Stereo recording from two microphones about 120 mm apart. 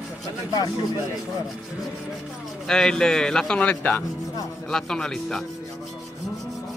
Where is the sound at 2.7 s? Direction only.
5° left (ahead or behind).